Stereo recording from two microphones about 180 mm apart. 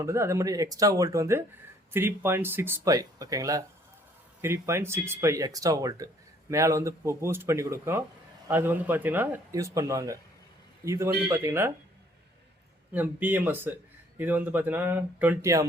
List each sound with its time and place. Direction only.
0.0 s speech: 15° right (ahead or behind)
12.9 s speech: 10° right (ahead or behind)